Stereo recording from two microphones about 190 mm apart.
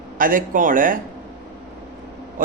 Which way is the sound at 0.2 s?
45° right (ahead or behind).